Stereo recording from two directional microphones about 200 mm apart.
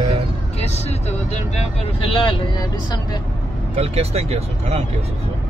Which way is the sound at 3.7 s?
30° right (ahead or behind).